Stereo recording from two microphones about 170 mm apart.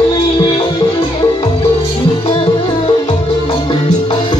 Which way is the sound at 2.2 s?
25° left (ahead or behind).